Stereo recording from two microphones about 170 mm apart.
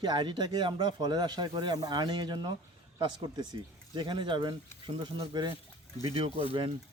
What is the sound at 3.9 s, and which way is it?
Speech, 30° right (ahead or behind).